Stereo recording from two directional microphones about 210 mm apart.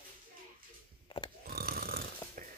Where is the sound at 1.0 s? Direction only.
25° left (ahead or behind).